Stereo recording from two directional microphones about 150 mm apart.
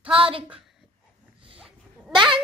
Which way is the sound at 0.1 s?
35° right (ahead or behind).